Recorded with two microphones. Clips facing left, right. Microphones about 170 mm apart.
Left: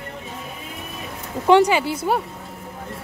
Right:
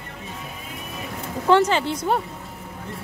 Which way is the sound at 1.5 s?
15° left (ahead or behind).